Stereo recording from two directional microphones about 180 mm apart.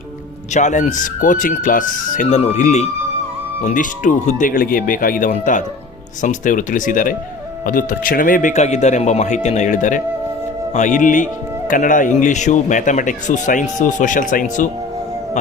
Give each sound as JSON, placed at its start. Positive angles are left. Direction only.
{"t": 0.5, "sound": "speech", "side_deg": 40}